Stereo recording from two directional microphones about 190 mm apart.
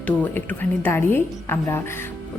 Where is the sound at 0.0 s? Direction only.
10° left (ahead or behind).